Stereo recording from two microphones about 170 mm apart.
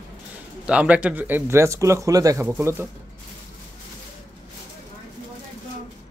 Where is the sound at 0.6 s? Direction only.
5° right (ahead or behind).